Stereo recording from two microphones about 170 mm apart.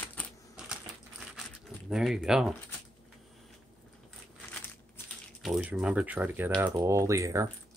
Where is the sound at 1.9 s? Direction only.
Centre (ahead or behind).